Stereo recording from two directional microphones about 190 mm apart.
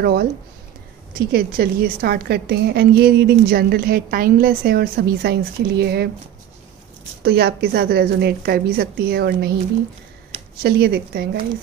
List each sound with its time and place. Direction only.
0.0 s a woman's voice: 55° right (ahead or behind)
7.2 s a woman's voice: 60° right (ahead or behind)
10.6 s a woman's voice: 60° right (ahead or behind)